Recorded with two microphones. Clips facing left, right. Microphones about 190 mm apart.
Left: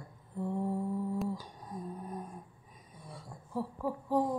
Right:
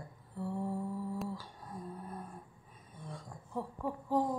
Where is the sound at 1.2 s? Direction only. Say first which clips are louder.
Left 4 dB; 15° left (ahead or behind).